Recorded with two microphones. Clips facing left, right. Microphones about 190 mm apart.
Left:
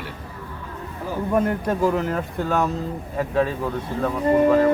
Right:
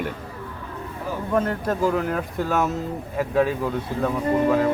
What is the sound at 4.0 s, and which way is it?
Speech, 5° right (ahead or behind).